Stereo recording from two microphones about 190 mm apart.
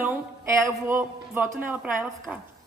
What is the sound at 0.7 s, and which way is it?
A woman's voice, 15° right (ahead or behind).